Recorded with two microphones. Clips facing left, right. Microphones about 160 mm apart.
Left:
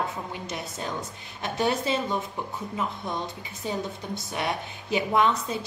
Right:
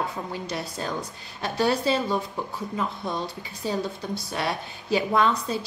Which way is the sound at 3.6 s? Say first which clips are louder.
Right 3 dB; 20° left (ahead or behind).